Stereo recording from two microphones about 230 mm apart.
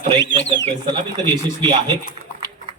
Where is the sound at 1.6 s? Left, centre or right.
Right.